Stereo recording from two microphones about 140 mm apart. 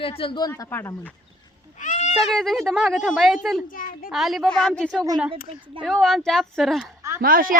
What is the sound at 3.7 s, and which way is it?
Speech, 80° left.